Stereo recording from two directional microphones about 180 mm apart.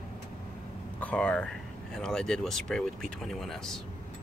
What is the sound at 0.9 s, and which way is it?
Speech, 5° left (ahead or behind).